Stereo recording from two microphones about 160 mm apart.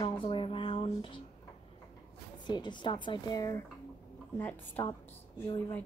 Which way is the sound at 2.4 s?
30° left (ahead or behind).